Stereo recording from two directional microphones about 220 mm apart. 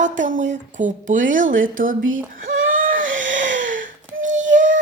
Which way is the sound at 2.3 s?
40° right (ahead or behind).